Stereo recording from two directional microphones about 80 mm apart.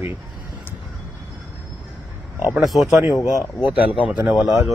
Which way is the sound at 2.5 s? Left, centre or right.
Centre.